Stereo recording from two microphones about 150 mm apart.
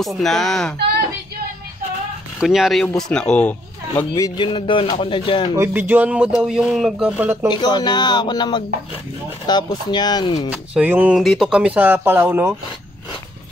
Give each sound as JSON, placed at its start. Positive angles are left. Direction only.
{"t": 0.0, "sound": "speech", "side_deg": 0}
{"t": 2.4, "sound": "speech", "side_deg": 0}
{"t": 4.1, "sound": "speech", "side_deg": 20}
{"t": 4.5, "sound": "speech", "side_deg": 35}
{"t": 5.6, "sound": "speech", "side_deg": -10}
{"t": 7.5, "sound": "speech", "side_deg": 30}
{"t": 10.5, "sound": "speech", "side_deg": -10}